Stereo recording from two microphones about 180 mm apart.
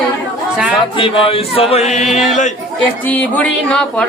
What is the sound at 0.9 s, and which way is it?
Music, 30° left (ahead or behind).